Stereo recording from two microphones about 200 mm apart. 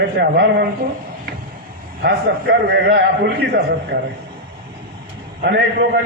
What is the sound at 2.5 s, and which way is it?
Speech, 55° right (ahead or behind).